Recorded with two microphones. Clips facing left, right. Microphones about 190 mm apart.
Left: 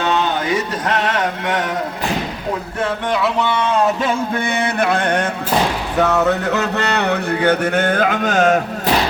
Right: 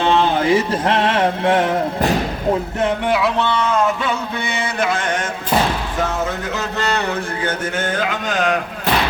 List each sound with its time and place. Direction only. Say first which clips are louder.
0.0 s mantra: right 3 dB; 30° right (ahead or behind)
3.4 s speech: even; 20° left (ahead or behind)
4.0 s speech: left 3 dB; 55° left (ahead or behind)